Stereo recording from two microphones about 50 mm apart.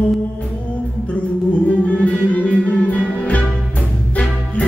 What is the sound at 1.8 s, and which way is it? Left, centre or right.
Music, left.